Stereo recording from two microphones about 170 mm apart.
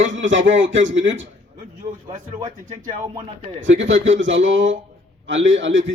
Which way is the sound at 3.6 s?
90° right.